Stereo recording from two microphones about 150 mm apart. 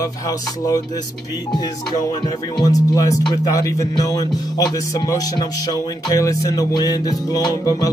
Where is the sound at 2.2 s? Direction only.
25° left (ahead or behind).